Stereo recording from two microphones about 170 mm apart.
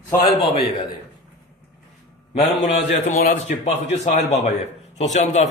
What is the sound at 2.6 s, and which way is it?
A man's voice, 45° left (ahead or behind).